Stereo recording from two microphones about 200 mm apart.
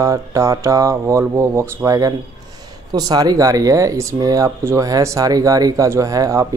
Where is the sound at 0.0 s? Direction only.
15° right (ahead or behind).